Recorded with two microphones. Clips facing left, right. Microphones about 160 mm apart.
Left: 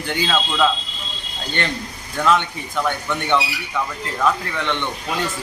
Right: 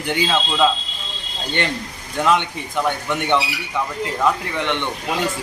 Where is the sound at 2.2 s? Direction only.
15° right (ahead or behind).